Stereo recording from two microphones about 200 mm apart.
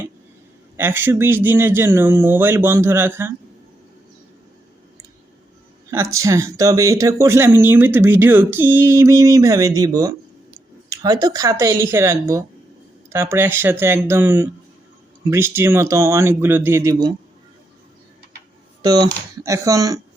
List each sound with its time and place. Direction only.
0.8 s speech: 10° right (ahead or behind)
5.9 s speech: 15° right (ahead or behind)
18.8 s speech: 20° right (ahead or behind)